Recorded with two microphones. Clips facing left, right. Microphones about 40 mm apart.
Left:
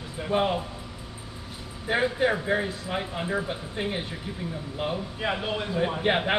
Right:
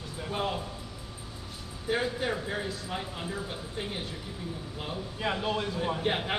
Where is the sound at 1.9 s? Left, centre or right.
Left.